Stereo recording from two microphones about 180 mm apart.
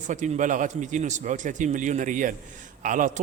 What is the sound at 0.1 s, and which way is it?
A man's voice, 45° right (ahead or behind).